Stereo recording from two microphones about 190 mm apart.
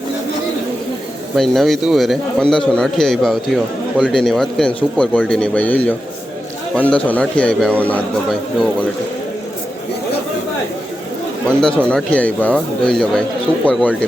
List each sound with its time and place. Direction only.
1.4 s a man's voice: centre (ahead or behind)
11.4 s a man's voice: 5° left (ahead or behind)